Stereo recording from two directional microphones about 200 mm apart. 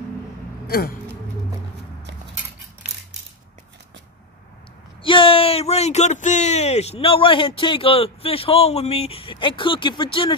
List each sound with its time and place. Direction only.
0.7 s speech: 50° left (ahead or behind)
5.0 s speech: 25° left (ahead or behind)